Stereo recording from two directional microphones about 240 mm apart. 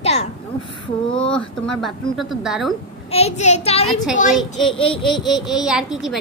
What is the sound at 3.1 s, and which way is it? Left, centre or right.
A child's voice, left.